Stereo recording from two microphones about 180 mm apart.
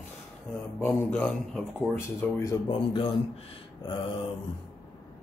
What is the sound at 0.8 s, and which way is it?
Speech, 10° left (ahead or behind).